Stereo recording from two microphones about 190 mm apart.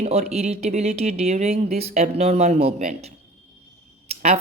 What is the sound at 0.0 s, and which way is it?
Speech, 35° right (ahead or behind).